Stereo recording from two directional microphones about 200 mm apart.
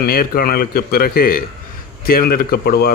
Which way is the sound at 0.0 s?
50° left (ahead or behind).